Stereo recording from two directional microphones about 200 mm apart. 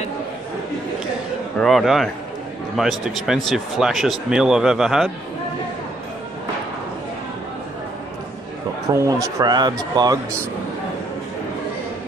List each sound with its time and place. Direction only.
1.6 s a man's voice: centre (ahead or behind)
8.8 s speech: 15° right (ahead or behind)